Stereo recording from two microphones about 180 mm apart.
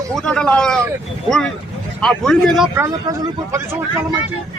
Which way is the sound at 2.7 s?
15° right (ahead or behind).